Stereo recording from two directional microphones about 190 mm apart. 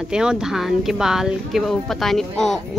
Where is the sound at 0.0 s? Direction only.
5° right (ahead or behind).